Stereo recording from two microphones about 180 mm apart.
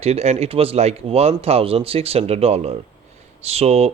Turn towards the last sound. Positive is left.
turn(degrees=-35)  # may be behind; listen again after turning